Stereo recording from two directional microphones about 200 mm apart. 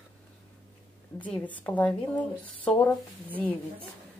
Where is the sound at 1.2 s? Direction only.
5° left (ahead or behind).